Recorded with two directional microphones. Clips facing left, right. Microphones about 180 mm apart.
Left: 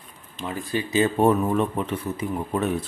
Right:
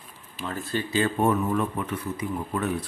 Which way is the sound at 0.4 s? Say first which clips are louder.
Left 2 dB; 15° left (ahead or behind).